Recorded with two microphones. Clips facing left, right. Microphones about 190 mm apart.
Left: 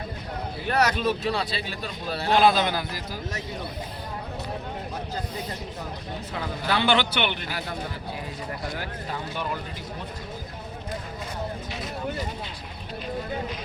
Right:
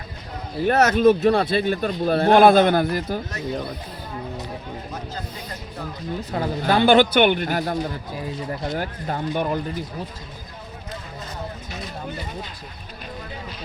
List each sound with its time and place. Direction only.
0.7 s a man's voice: 50° right (ahead or behind)
6.3 s a man's voice: 45° right (ahead or behind)